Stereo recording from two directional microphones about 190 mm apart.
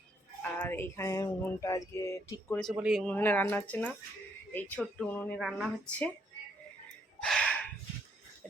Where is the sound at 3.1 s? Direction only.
10° left (ahead or behind).